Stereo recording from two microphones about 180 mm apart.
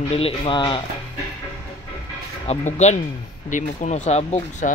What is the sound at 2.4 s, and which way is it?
Speech, 40° left (ahead or behind).